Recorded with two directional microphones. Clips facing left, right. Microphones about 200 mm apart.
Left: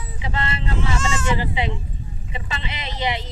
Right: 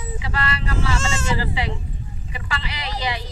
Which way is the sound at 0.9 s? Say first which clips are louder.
Left 1 dB; 25° right (ahead or behind).